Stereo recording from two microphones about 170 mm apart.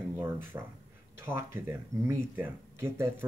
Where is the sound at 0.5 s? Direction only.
15° right (ahead or behind).